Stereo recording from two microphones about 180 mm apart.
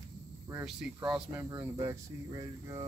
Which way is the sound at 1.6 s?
20° right (ahead or behind).